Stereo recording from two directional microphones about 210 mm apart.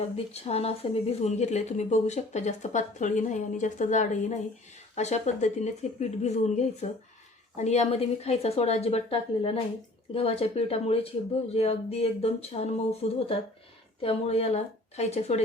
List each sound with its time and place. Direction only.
0.4 s a woman's voice: 30° left (ahead or behind)